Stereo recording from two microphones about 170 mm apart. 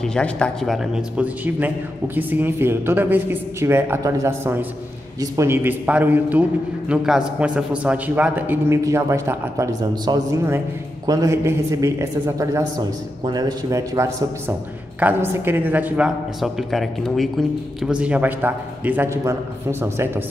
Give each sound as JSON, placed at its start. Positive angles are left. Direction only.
{"t": 0.0, "sound": "a man's voice", "side_deg": 5}